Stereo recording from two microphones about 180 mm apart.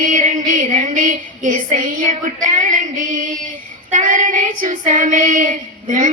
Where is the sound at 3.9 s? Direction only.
45° right (ahead or behind).